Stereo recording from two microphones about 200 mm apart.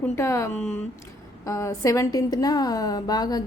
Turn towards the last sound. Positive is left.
turn(degrees=20)  # may be behind; listen again after turning